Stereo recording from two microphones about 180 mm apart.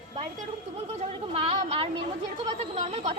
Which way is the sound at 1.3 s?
30° right (ahead or behind).